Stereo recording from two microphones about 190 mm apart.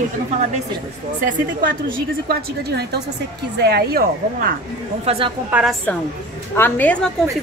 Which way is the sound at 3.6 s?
60° right (ahead or behind).